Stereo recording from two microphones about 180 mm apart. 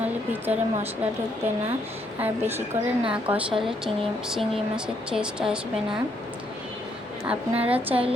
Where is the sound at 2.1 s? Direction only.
10° right (ahead or behind).